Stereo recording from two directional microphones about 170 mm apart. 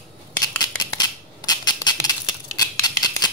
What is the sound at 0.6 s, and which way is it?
Scissors, 25° left (ahead or behind).